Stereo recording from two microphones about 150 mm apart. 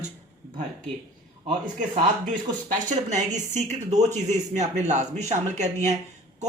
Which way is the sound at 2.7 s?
55° right (ahead or behind).